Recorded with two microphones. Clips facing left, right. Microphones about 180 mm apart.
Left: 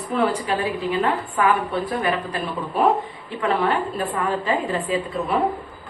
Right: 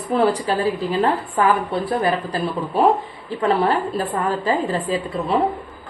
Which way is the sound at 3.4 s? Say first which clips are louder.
Right 3 dB; 40° right (ahead or behind).